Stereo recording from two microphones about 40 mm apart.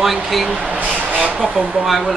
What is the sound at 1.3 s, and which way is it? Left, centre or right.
Speech, centre.